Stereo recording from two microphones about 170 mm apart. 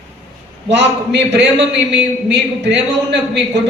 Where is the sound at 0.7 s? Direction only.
90° right.